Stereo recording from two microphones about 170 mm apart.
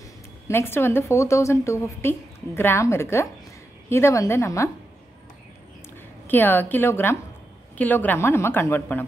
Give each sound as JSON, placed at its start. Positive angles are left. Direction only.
{"t": 0.5, "sound": "a woman's voice", "side_deg": 15}
{"t": 6.2, "sound": "a woman's voice", "side_deg": 10}